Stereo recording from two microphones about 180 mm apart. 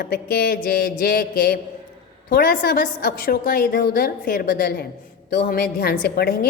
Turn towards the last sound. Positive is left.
turn(degrees=55)  # may be behind; listen again after turning